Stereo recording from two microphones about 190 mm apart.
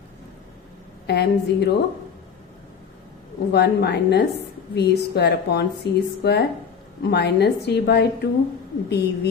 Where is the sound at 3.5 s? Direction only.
60° left (ahead or behind).